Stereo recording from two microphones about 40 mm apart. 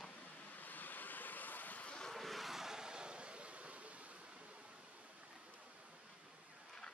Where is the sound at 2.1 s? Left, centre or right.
Centre; by 4.2 s right.